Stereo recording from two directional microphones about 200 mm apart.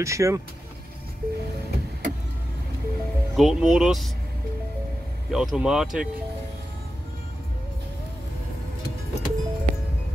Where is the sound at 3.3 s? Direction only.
Centre (ahead or behind).